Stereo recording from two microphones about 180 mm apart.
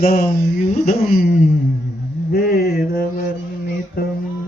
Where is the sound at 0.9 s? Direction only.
45° left (ahead or behind).